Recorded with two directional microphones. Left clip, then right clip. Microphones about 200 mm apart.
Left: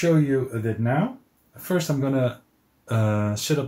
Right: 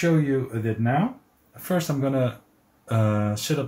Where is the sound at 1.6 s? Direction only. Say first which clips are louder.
Left 1 dB; 20° left (ahead or behind).